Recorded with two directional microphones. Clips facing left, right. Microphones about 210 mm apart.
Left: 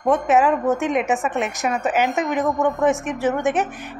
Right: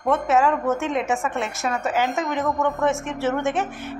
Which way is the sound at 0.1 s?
15° left (ahead or behind).